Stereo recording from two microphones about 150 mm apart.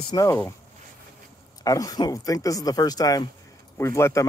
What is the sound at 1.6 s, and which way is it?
Speech, 25° left (ahead or behind).